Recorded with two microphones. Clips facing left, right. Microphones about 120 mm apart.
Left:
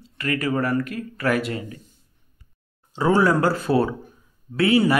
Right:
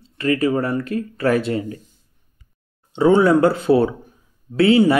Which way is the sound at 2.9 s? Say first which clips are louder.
Right 5 dB; 25° right (ahead or behind).